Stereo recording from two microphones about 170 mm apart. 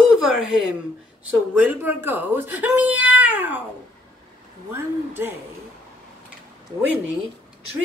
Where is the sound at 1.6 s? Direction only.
10° right (ahead or behind).